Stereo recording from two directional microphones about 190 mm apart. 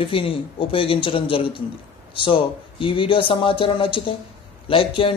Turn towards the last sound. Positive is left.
turn(degrees=30)  # may be behind; listen again after turning